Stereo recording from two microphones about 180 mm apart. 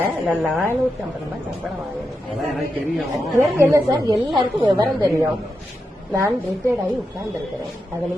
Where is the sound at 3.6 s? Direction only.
20° right (ahead or behind).